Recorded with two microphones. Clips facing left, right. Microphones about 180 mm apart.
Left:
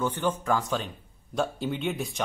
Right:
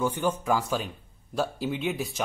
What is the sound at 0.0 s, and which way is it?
Speech, 10° right (ahead or behind).